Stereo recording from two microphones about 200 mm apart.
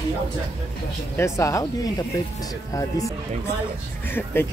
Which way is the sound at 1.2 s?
15° left (ahead or behind).